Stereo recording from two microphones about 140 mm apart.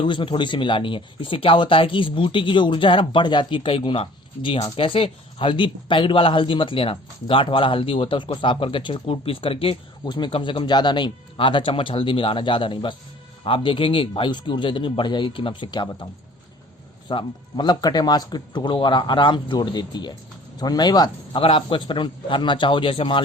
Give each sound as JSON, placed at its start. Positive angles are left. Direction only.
{"t": 0.0, "sound": "speech", "side_deg": 35}
{"t": 17.1, "sound": "speech", "side_deg": 35}